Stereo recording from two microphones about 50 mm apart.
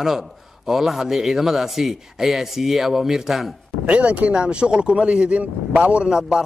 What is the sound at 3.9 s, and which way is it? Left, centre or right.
A man's voice, right.